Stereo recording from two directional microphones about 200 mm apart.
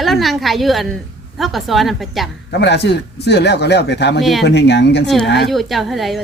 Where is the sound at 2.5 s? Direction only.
55° left (ahead or behind).